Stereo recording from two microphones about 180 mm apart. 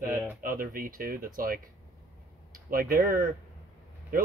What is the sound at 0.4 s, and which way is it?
Speech, 50° right (ahead or behind).